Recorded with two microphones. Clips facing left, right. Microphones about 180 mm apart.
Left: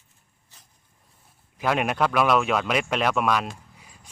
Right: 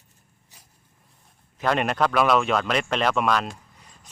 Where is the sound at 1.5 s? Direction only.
5° left (ahead or behind).